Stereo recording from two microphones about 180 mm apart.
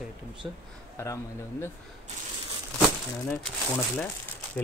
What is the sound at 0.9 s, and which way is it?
Speech, 15° left (ahead or behind).